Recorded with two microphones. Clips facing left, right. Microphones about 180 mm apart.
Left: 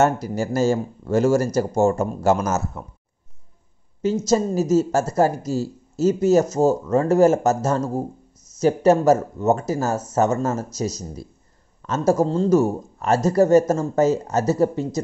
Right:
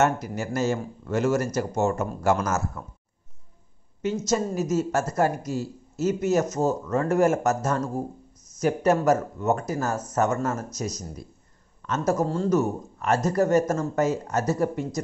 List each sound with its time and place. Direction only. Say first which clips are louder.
0.0 s speech: left 4 dB; 35° left (ahead or behind)
2.0 s speech: left 4 dB; 25° left (ahead or behind)
4.3 s speech: left 7 dB; 30° left (ahead or behind)